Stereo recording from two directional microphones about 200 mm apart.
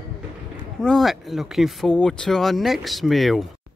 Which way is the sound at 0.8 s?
Centre (ahead or behind).